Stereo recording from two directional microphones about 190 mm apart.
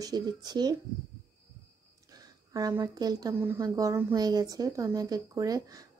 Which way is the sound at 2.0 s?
20° right (ahead or behind).